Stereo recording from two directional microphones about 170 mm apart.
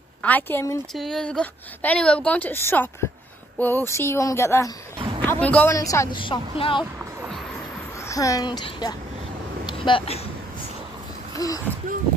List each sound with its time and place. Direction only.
0.2 s a woman's voice: 10° left (ahead or behind)
0.9 s a woman's voice: centre (ahead or behind)
5.8 s a woman's voice: 20° left (ahead or behind)
8.0 s a woman's voice: 20° left (ahead or behind)
11.3 s speech: 20° left (ahead or behind)